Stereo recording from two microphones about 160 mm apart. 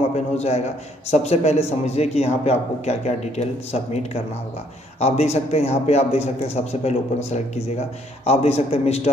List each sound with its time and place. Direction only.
0.1 s a man's voice: 40° left (ahead or behind)